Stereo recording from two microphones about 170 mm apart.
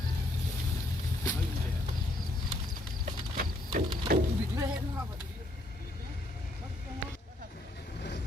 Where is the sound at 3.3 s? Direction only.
55° right (ahead or behind).